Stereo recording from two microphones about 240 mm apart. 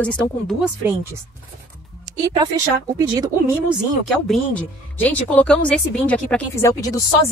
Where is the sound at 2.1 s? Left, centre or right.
Centre.